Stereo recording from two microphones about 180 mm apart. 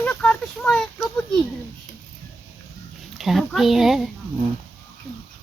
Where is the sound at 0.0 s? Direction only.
5° left (ahead or behind).